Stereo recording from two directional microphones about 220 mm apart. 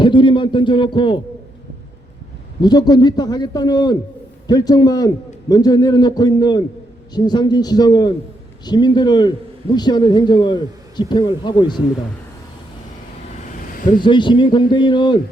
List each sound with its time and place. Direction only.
0.0 s a man's voice: 20° left (ahead or behind)
2.6 s a man's voice: 20° left (ahead or behind)
14.0 s a man's voice: 20° left (ahead or behind)